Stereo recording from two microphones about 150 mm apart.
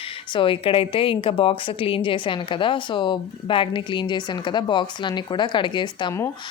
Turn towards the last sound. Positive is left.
turn(degrees=30)  # may be behind; listen again after turning